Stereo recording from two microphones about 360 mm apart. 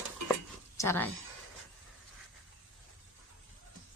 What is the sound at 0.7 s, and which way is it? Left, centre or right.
Speech, centre.